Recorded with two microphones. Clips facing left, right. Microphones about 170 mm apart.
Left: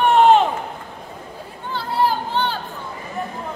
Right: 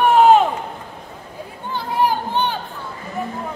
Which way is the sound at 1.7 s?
15° right (ahead or behind).